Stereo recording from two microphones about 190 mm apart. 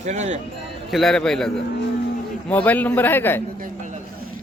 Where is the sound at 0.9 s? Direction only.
Centre (ahead or behind).